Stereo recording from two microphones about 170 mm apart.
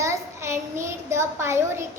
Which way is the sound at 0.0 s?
15° right (ahead or behind).